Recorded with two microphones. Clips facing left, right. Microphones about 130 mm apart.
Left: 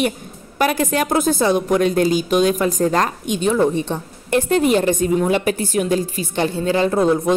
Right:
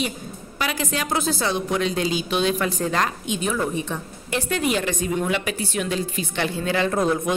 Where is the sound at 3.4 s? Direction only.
30° left (ahead or behind).